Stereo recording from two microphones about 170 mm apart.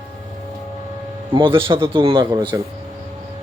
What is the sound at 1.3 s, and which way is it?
Speech, 30° right (ahead or behind).